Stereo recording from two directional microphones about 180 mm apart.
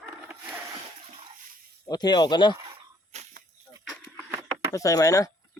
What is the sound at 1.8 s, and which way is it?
Speech, 25° left (ahead or behind).